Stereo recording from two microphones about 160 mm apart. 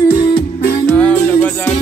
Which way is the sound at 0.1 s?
30° left (ahead or behind).